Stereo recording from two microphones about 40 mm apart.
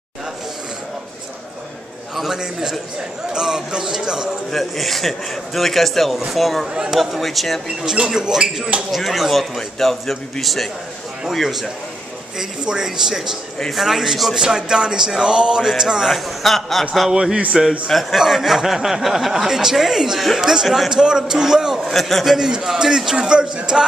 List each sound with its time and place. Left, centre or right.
2.3 s speech: centre
4.5 s a man's voice: centre
6.7 s speech: centre
7.0 s a man's voice: centre
7.6 s a man's voice: centre
12.4 s a man's voice: centre
14.3 s speech: centre
16.1 s a man's voice: centre
17.1 s a man's voice: right
17.8 s a man's voice: centre
20.6 s a man's voice: centre
20.9 s a man's voice: centre
21.9 s a man's voice: centre
22.4 s a man's voice: centre